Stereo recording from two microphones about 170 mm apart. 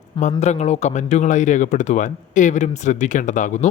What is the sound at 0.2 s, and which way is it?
Speech, 40° left (ahead or behind).